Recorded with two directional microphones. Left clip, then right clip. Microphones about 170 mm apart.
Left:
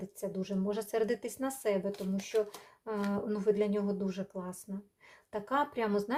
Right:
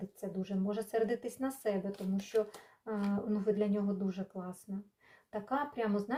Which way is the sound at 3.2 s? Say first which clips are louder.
Left 3 dB; 40° left (ahead or behind).